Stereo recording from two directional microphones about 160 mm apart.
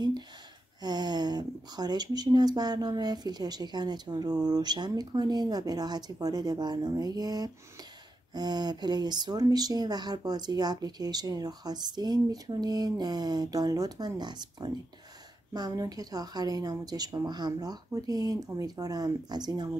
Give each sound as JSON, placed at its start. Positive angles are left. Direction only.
{"t": 0.8, "sound": "speech", "side_deg": -25}